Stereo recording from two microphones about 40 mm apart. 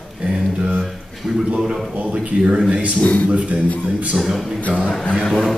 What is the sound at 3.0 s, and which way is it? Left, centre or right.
Speech, left.